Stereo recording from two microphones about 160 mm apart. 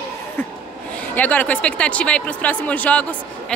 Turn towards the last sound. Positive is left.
turn(degrees=10)  # may be behind; listen again after turning